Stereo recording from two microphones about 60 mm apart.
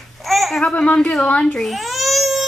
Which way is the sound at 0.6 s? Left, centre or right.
Centre.